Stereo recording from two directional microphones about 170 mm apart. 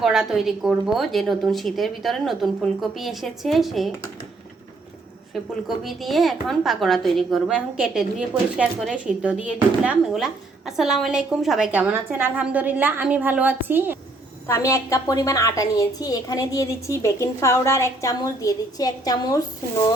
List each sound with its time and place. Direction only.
0.0 s a woman's voice: 5° right (ahead or behind)
5.3 s a woman's voice: centre (ahead or behind)
14.4 s a woman's voice: 15° left (ahead or behind)